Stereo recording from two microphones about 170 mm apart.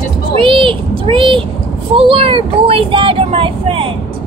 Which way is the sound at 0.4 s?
30° right (ahead or behind).